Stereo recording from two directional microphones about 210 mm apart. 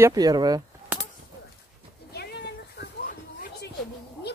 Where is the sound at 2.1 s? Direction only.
50° left (ahead or behind).